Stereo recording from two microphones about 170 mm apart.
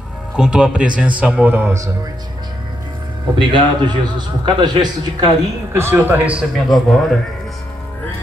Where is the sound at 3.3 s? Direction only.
30° right (ahead or behind); by 7.1 s centre (ahead or behind).